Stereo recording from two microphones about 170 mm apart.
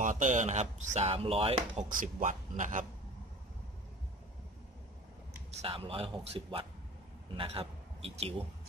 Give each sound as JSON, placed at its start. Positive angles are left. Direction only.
{"t": 0.0, "sound": "speech", "side_deg": -45}
{"t": 2.0, "sound": "speech", "side_deg": -50}
{"t": 5.6, "sound": "a man's voice", "side_deg": -35}